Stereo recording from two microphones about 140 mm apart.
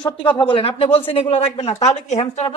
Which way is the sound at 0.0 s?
35° left (ahead or behind).